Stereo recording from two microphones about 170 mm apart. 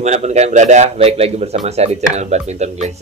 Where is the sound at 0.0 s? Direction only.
40° right (ahead or behind).